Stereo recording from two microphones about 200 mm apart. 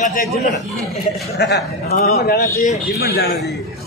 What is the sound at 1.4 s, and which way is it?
A man's voice, 55° left (ahead or behind).